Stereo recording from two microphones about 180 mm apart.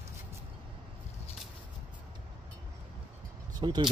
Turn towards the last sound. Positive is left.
turn(degrees=-25)  # may be behind; listen again after turning